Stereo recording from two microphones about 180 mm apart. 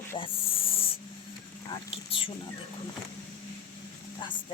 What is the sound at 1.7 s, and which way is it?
Speech, 30° left (ahead or behind).